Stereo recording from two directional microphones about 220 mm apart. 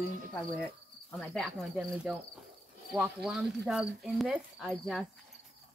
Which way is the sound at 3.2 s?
5° right (ahead or behind).